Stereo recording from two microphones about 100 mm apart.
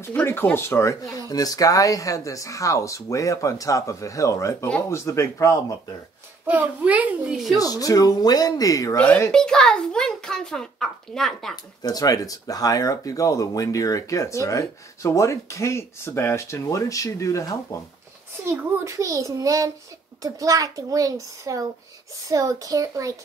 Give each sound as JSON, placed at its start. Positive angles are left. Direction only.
{"t": 0.0, "sound": "speech", "side_deg": 20}
{"t": 6.4, "sound": "a child's voice", "side_deg": -15}
{"t": 7.5, "sound": "speech", "side_deg": 35}
{"t": 8.9, "sound": "a child's voice", "side_deg": 15}
{"t": 11.5, "sound": "speech", "side_deg": 40}
{"t": 18.4, "sound": "a child's voice", "side_deg": -25}